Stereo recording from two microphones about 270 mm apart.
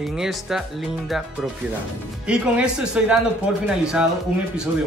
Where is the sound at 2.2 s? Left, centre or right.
Centre.